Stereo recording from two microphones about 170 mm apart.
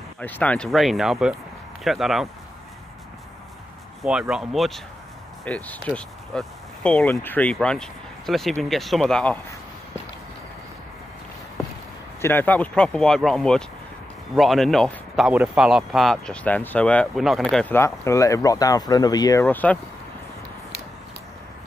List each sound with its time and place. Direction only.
0.2 s speech: 10° left (ahead or behind)
4.0 s speech: 5° right (ahead or behind)
12.2 s speech: 10° left (ahead or behind)
17.7 s speech: 15° left (ahead or behind)
19.4 s speech: 10° left (ahead or behind)